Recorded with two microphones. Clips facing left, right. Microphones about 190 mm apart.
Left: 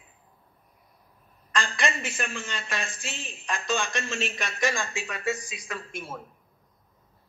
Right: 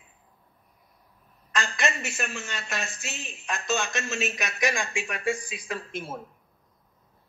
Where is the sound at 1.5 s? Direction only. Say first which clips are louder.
Even; 5° right (ahead or behind).